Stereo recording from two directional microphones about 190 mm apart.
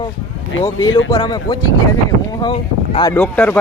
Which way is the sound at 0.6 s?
20° left (ahead or behind).